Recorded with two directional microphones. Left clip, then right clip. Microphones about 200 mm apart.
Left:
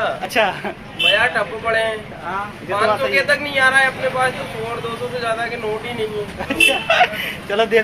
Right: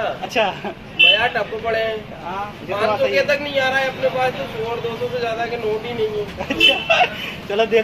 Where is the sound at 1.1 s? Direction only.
20° right (ahead or behind).